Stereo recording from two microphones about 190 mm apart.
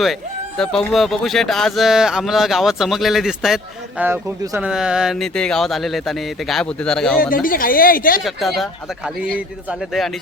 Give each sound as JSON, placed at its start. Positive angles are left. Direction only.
{"t": 0.0, "sound": "speech", "side_deg": 0}
{"t": 7.2, "sound": "speech", "side_deg": 50}
{"t": 8.2, "sound": "speech", "side_deg": 0}